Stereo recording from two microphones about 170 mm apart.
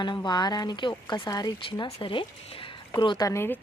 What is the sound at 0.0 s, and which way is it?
A woman's voice, 25° left (ahead or behind).